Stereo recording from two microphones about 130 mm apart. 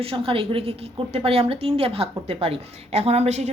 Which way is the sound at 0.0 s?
45° right (ahead or behind).